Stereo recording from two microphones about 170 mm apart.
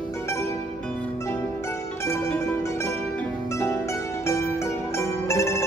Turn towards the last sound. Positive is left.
turn(degrees=15)  # may be behind; listen again after turning